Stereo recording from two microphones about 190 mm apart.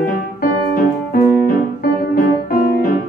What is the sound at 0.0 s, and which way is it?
Music, 45° left (ahead or behind).